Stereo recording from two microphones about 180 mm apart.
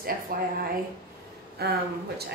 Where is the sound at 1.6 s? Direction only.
60° right (ahead or behind).